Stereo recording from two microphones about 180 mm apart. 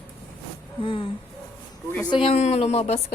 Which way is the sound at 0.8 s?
30° left (ahead or behind).